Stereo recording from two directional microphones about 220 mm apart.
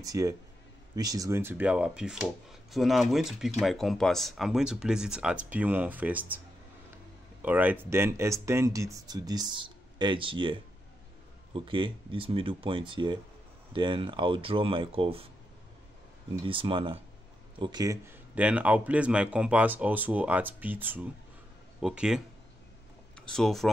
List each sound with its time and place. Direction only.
0.0 s speech: 15° right (ahead or behind)
7.4 s speech: 10° right (ahead or behind); by 15.2 s 25° right (ahead or behind)
16.4 s speech: 25° right (ahead or behind); by 23.7 s centre (ahead or behind)